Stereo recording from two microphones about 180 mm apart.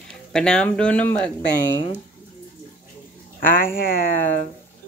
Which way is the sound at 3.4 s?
50° left (ahead or behind).